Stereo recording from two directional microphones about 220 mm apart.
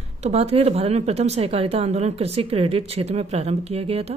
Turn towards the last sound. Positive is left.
turn(degrees=-25)  # may be behind; listen again after turning